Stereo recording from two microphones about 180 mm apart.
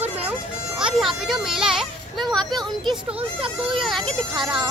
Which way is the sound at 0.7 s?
5° right (ahead or behind).